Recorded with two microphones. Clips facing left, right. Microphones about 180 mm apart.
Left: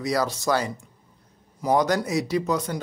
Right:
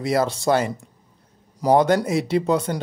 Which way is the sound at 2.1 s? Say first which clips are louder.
Right 4 dB; 25° right (ahead or behind).